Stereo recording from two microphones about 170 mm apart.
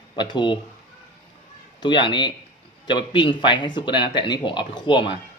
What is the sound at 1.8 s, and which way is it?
Speech, 25° left (ahead or behind).